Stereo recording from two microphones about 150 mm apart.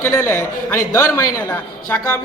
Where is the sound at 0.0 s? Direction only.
15° left (ahead or behind).